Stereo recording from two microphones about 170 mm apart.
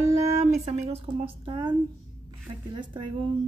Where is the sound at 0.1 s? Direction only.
40° right (ahead or behind).